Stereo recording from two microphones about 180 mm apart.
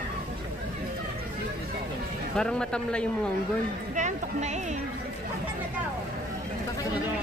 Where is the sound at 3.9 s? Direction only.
40° right (ahead or behind).